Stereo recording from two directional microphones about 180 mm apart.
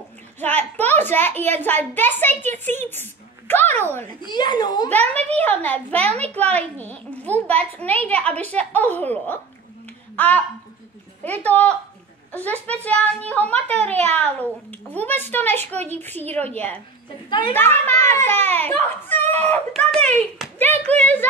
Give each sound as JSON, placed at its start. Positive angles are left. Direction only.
{"t": 0.4, "sound": "a child's voice", "side_deg": 10}
{"t": 4.2, "sound": "speech", "side_deg": 25}
{"t": 4.8, "sound": "a child's voice", "side_deg": 10}
{"t": 11.4, "sound": "a child's voice", "side_deg": 10}
{"t": 17.3, "sound": "speech", "side_deg": 25}
{"t": 17.6, "sound": "a child's voice", "side_deg": 10}